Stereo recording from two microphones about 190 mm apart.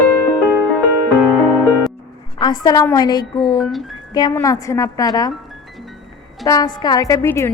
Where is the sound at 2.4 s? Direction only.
20° left (ahead or behind).